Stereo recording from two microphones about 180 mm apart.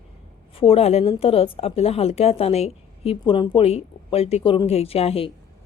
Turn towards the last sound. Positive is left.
turn(degrees=35)  # may be behind; listen again after turning